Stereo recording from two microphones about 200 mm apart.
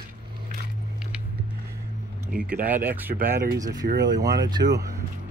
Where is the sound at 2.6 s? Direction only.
10° right (ahead or behind).